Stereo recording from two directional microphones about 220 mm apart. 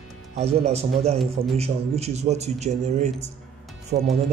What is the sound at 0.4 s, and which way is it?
Speech, 25° right (ahead or behind).